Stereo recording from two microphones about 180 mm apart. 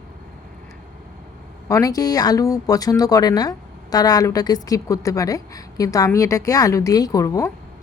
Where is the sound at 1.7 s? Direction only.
20° left (ahead or behind).